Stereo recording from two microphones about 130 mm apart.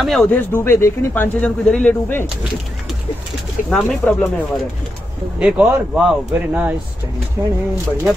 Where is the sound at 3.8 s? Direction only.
10° left (ahead or behind).